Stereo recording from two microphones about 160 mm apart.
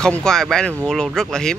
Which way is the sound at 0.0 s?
5° left (ahead or behind).